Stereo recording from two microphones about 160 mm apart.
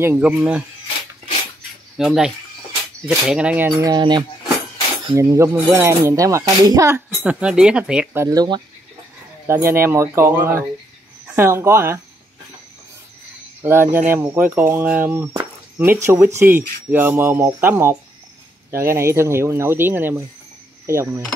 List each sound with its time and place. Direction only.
0.0 s speech: 10° right (ahead or behind)
2.0 s speech: 5° right (ahead or behind)
3.8 s speech: 25° right (ahead or behind)
7.2 s speech: 5° right (ahead or behind)
13.6 s speech: 15° right (ahead or behind)